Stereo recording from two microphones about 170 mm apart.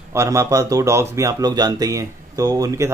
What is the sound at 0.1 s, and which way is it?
Speech, 15° right (ahead or behind).